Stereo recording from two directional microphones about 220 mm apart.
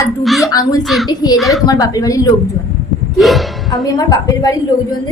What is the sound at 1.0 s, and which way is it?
Speech, 15° left (ahead or behind).